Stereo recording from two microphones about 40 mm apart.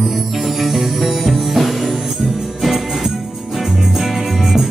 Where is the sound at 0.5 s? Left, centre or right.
Centre.